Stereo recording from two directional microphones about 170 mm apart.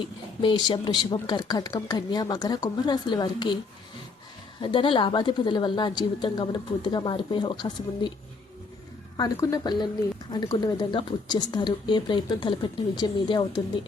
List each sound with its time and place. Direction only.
0.0 s a woman's voice: 25° left (ahead or behind)
4.6 s a woman's voice: 30° left (ahead or behind)
9.1 s a woman's voice: 20° left (ahead or behind)